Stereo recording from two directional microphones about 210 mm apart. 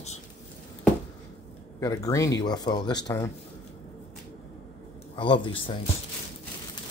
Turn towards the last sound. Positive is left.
turn(degrees=25)  # may be behind; listen again after turning